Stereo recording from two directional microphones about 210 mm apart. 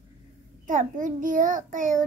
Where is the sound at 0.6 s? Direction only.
40° right (ahead or behind).